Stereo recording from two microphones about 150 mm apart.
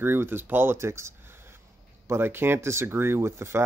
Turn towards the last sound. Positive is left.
turn(degrees=-15)  # may be behind; listen again after turning